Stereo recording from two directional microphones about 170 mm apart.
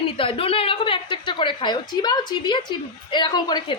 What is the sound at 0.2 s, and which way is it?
A woman's voice, 30° left (ahead or behind).